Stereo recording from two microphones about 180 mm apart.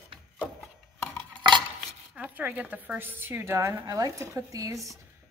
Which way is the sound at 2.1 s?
10° right (ahead or behind).